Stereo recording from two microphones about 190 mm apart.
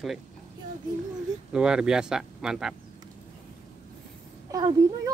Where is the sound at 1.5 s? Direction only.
5° right (ahead or behind).